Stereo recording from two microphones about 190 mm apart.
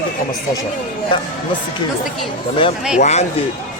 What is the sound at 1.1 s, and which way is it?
Speech, 25° left (ahead or behind).